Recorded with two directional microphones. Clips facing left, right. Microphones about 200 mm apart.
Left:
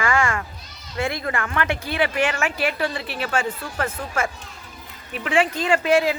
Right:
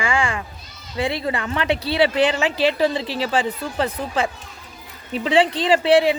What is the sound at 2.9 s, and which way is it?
Speech, 90° right.